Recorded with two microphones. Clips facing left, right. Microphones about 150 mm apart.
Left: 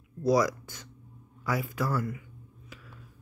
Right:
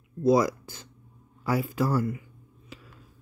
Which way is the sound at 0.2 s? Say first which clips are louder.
Right 3 dB; 25° right (ahead or behind).